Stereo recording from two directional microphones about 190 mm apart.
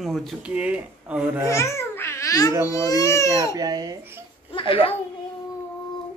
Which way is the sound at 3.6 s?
20° right (ahead or behind).